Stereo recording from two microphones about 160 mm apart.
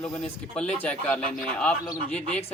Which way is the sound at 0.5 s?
5° left (ahead or behind).